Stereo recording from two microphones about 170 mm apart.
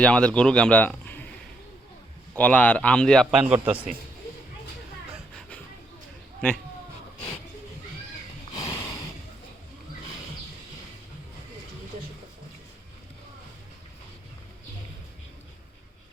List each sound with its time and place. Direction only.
0.0 s a man's voice: 5° left (ahead or behind)
2.3 s a man's voice: 10° left (ahead or behind); by 3.8 s 10° right (ahead or behind)
8.5 s a sound: 20° left (ahead or behind)